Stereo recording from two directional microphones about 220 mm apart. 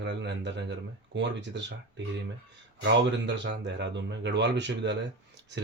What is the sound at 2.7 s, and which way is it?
Speech, 50° right (ahead or behind).